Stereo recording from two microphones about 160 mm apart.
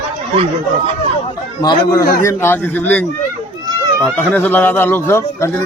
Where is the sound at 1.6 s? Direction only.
25° left (ahead or behind).